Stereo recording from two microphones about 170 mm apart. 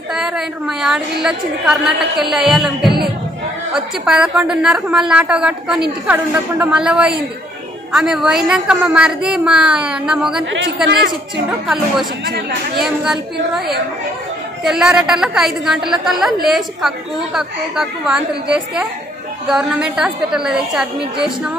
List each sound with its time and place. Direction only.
0.1 s a woman's voice: 5° right (ahead or behind)
11.6 s a woman's voice: centre (ahead or behind)
12.3 s speech: 65° right (ahead or behind)
12.8 s a woman's voice: 5° right (ahead or behind)
14.6 s a woman's voice: 5° right (ahead or behind)